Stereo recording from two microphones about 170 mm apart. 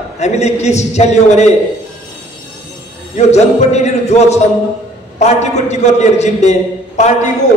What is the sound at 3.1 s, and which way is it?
A man's voice, 40° left (ahead or behind).